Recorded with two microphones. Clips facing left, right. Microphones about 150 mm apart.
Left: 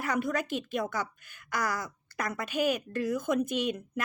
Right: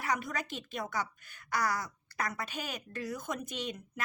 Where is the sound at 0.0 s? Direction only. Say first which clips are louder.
Left 5 dB; 50° left (ahead or behind).